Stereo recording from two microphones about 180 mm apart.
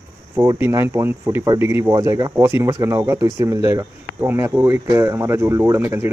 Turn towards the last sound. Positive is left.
turn(degrees=-15)  # may be behind; listen again after turning